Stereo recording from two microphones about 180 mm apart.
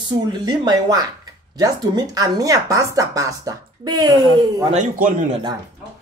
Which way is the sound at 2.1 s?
20° right (ahead or behind).